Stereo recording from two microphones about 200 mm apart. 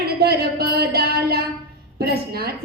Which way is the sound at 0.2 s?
50° right (ahead or behind).